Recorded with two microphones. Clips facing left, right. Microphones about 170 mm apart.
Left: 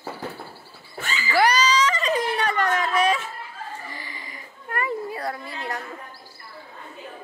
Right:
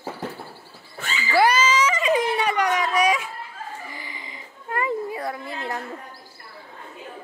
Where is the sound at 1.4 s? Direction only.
20° right (ahead or behind).